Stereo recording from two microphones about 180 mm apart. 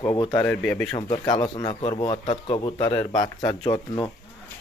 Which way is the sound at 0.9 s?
25° left (ahead or behind).